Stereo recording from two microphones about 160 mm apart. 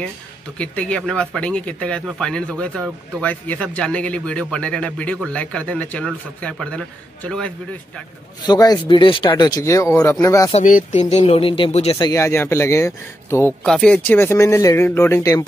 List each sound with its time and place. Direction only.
0.6 s a man's voice: 5° left (ahead or behind)
8.5 s speech: 25° left (ahead or behind)
10.5 s speech: 55° left (ahead or behind); by 12.1 s 35° left (ahead or behind)
12.1 s speech: 20° left (ahead or behind)
13.7 s speech: 5° left (ahead or behind)